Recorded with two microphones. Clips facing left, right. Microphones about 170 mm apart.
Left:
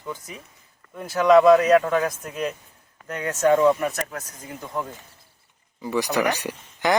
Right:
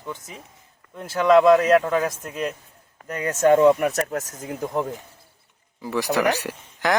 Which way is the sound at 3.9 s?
40° right (ahead or behind).